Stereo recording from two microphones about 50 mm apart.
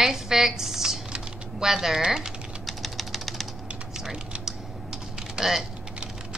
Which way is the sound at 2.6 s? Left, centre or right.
Centre.